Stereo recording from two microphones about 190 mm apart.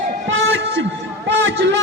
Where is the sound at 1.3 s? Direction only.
75° right (ahead or behind).